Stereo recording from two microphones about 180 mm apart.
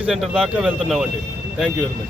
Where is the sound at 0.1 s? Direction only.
Centre (ahead or behind).